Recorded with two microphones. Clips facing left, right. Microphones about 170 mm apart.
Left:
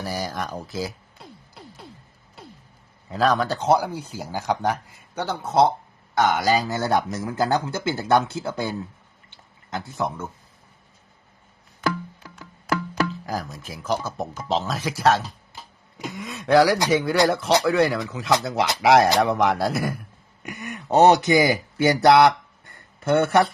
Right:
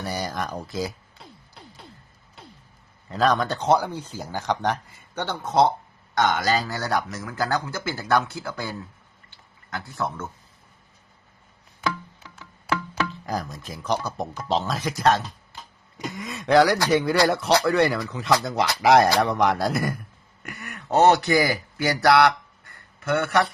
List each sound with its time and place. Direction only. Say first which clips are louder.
0.0 s music: even; centre (ahead or behind)
3.1 s speech: left 1 dB; 5° left (ahead or behind); by 8.7 s 25° left (ahead or behind)
9.3 s a sound: left 3 dB; 20° left (ahead or behind)
11.8 s music: left 3 dB; 5° left (ahead or behind)
13.0 s speech: left 2 dB; 5° left (ahead or behind)
20.4 s speech: left 5 dB; 20° left (ahead or behind)